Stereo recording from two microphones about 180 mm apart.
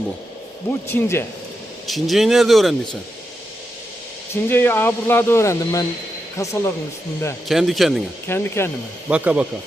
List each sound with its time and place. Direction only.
0.9 s speech: 15° left (ahead or behind)
1.9 s speech: centre (ahead or behind)
4.4 s speech: 10° left (ahead or behind)
7.4 s speech: centre (ahead or behind)
8.3 s speech: 15° left (ahead or behind)
9.0 s speech: 5° right (ahead or behind)